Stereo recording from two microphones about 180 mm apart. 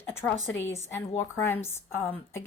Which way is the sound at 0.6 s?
10° left (ahead or behind).